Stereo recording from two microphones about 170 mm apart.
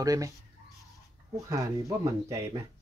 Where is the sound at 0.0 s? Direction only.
20° right (ahead or behind).